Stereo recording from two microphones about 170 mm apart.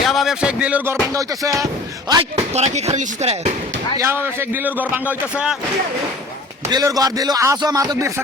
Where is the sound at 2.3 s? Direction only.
40° right (ahead or behind).